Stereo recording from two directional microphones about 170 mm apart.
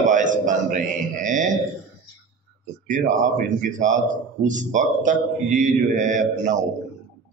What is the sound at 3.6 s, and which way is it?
A man's voice, 50° right (ahead or behind).